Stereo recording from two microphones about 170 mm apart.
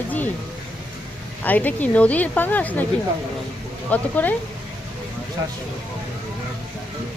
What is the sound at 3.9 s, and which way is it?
Speech, 10° left (ahead or behind).